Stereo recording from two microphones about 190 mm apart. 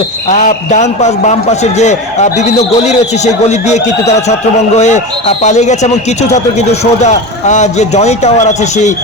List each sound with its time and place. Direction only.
0.3 s speech: 40° left (ahead or behind)